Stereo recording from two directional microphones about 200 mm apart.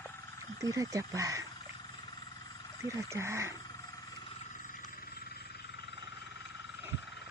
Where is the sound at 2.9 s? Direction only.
15° right (ahead or behind).